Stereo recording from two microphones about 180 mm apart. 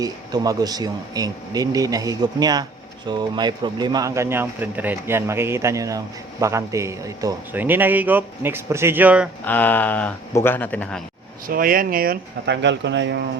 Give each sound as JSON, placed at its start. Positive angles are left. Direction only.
{"t": 0.0, "sound": "a man's voice", "side_deg": -20}
{"t": 9.4, "sound": "speech", "side_deg": 10}
{"t": 11.4, "sound": "speech", "side_deg": -50}